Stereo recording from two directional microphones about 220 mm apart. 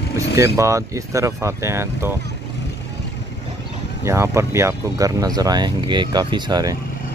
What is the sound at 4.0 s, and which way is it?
Speech, 15° right (ahead or behind).